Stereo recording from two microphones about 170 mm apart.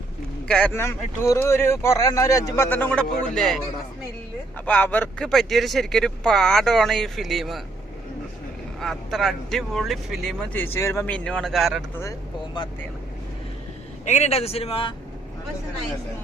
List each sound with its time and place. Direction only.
0.4 s speech: 5° left (ahead or behind)
4.6 s speech: 10° left (ahead or behind)
8.8 s speech: centre (ahead or behind)
10.5 s speech: 10° left (ahead or behind)
12.6 s speech: 25° left (ahead or behind)
14.0 s speech: 40° left (ahead or behind)